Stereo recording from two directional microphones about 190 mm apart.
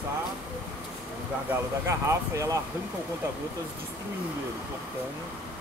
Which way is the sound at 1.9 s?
15° right (ahead or behind).